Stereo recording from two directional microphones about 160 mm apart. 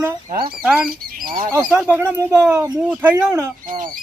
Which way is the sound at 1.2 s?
60° right (ahead or behind).